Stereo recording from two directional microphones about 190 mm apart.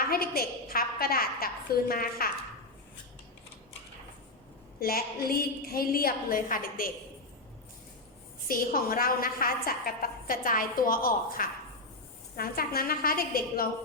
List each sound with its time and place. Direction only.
0.0 s a woman's voice: 50° left (ahead or behind)
4.8 s a woman's voice: 50° left (ahead or behind)
8.4 s a woman's voice: 50° left (ahead or behind)